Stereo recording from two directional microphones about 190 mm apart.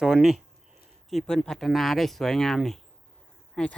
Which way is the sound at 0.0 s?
5° right (ahead or behind).